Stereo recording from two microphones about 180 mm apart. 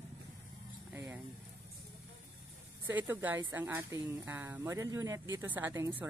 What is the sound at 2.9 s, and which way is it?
Speech, 10° right (ahead or behind).